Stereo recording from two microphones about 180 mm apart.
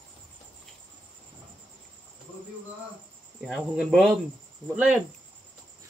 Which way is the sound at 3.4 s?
Centre (ahead or behind).